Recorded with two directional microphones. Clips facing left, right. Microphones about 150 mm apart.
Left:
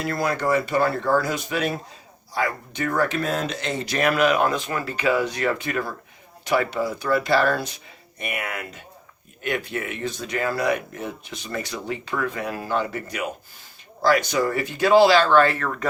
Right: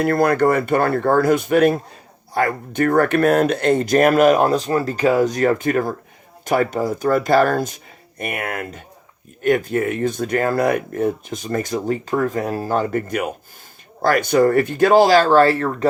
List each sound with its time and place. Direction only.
0.0 s speech: 55° right (ahead or behind); by 15.9 s 35° right (ahead or behind)